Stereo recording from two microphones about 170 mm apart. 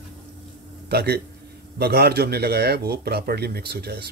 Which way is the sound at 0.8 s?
70° right (ahead or behind).